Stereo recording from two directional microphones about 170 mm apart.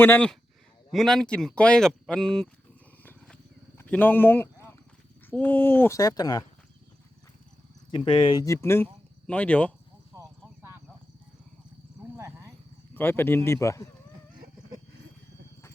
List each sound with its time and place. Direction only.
0.0 s speech: 10° left (ahead or behind)
3.0 s wild animals: 10° left (ahead or behind)
3.8 s speech: 10° left (ahead or behind)
7.9 s speech: 30° left (ahead or behind); by 9.7 s 10° left (ahead or behind)
10.2 s a sound: 15° right (ahead or behind)
12.1 s a sound: 15° right (ahead or behind)
12.9 s speech: 10° left (ahead or behind)